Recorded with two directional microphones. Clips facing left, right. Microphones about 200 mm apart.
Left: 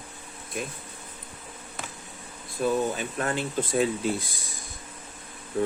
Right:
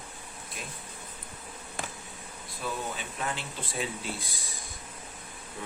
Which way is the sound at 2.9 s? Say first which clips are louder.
Left 7 dB; 50° left (ahead or behind).